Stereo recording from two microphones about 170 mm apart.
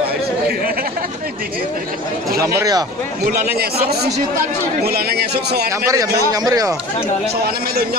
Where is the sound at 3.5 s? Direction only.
70° right (ahead or behind).